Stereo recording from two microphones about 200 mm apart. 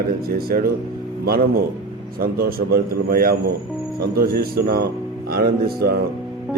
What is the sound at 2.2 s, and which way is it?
Speech, 50° right (ahead or behind).